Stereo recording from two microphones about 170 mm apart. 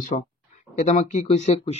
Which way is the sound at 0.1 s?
45° left (ahead or behind).